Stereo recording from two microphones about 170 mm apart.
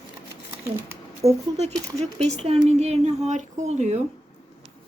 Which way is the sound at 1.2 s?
40° right (ahead or behind).